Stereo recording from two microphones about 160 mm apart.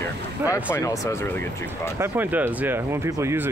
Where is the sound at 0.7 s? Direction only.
20° left (ahead or behind).